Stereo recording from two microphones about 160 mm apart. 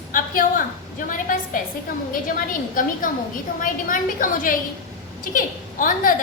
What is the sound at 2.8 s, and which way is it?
A woman's voice, 60° left (ahead or behind).